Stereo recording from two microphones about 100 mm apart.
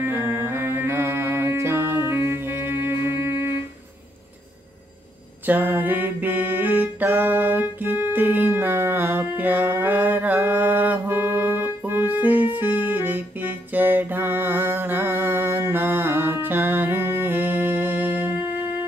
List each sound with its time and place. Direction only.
0.0 s music: 25° right (ahead or behind)
5.5 s music: 20° right (ahead or behind)